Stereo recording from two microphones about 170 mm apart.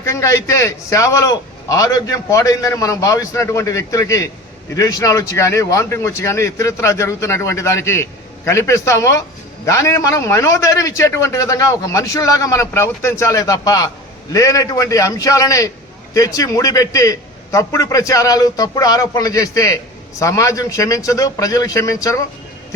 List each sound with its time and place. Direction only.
0.0 s a man's voice: 20° left (ahead or behind)